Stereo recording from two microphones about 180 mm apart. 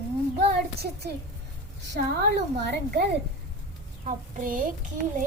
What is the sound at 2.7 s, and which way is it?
Speech, 65° right (ahead or behind).